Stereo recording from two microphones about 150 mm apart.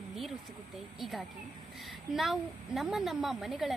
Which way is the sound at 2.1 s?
Centre (ahead or behind).